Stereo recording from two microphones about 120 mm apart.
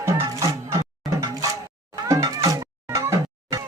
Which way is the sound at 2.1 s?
25° right (ahead or behind).